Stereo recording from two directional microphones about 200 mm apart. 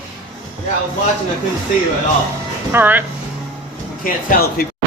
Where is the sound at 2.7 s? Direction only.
10° right (ahead or behind).